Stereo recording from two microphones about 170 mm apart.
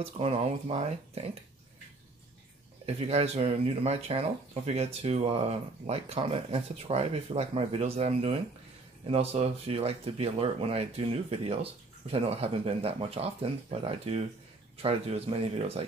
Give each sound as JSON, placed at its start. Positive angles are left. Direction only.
{"t": 0.0, "sound": "speech", "side_deg": -35}
{"t": 3.0, "sound": "speech", "side_deg": -40}